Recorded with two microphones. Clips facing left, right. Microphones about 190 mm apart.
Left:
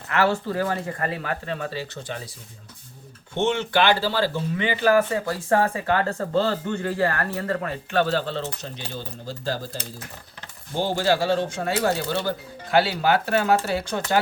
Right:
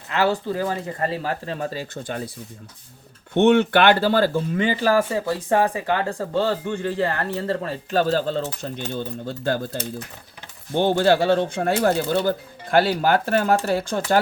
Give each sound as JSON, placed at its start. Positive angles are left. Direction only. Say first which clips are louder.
{"t": 0.1, "sound": "speech", "louder": "right 1 dB", "side_deg": -15}
{"t": 1.0, "sound": "speech", "louder": "right 5 dB", "side_deg": -30}
{"t": 3.3, "sound": "speech", "louder": "right 6 dB", "side_deg": -60}
{"t": 5.3, "sound": "speech", "louder": "right 2 dB", "side_deg": -15}
{"t": 8.9, "sound": "speech", "louder": "right 6 dB", "side_deg": -55}
{"t": 10.8, "sound": "speech", "louder": "right 4 dB", "side_deg": -60}